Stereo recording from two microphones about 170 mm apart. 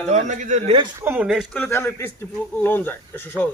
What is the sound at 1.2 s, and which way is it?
A man's voice, centre (ahead or behind).